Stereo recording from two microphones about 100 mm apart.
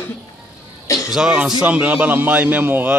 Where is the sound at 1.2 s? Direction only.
5° right (ahead or behind).